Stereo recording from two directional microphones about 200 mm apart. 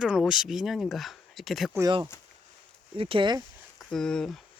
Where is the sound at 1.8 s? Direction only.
20° right (ahead or behind).